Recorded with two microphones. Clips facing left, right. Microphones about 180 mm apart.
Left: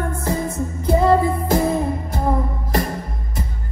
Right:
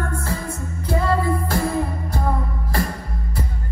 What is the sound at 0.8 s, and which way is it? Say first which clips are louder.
Music: left 5 dB; 20° left (ahead or behind).